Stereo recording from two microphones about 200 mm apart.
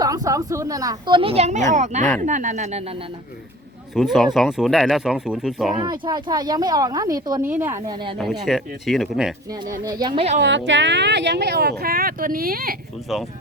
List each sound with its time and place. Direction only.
0.0 s speech: 15° right (ahead or behind); by 2.8 s 40° right (ahead or behind)
3.9 s speech: centre (ahead or behind)
5.8 s speech: 20° right (ahead or behind)
8.4 s speech: centre (ahead or behind)
9.8 s speech: 20° right (ahead or behind)
10.7 s speech: 65° right (ahead or behind); by 12.7 s 45° right (ahead or behind)